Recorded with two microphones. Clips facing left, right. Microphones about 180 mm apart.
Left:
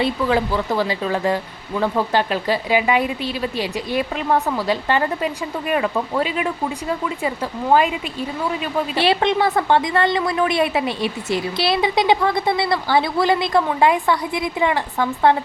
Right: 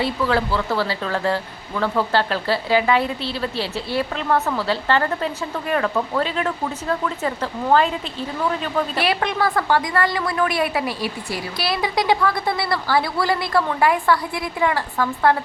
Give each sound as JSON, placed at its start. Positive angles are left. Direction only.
{"t": 0.0, "sound": "speech", "side_deg": 15}
{"t": 9.0, "sound": "a woman's voice", "side_deg": 25}